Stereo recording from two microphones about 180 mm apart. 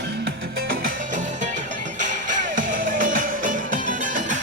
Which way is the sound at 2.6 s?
50° right (ahead or behind).